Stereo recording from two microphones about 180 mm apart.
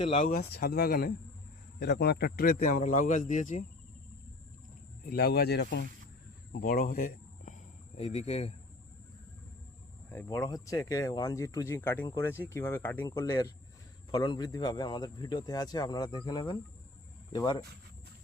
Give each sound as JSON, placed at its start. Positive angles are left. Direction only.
{"t": 0.0, "sound": "a man's voice", "side_deg": 40}
{"t": 5.0, "sound": "speech", "side_deg": 60}
{"t": 6.5, "sound": "speech", "side_deg": 50}
{"t": 10.1, "sound": "speech", "side_deg": 15}